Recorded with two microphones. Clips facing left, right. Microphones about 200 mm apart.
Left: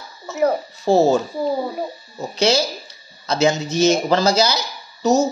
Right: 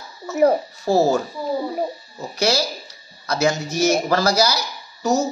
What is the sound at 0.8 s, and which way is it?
Speech, 20° left (ahead or behind).